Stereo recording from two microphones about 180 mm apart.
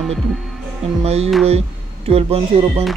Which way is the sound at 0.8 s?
35° right (ahead or behind).